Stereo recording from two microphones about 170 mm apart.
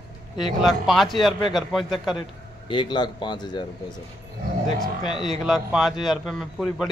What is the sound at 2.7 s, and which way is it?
Speech, 25° left (ahead or behind).